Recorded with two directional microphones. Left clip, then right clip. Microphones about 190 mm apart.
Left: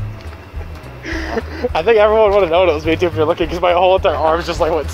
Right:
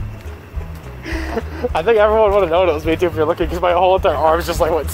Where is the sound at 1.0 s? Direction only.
10° right (ahead or behind).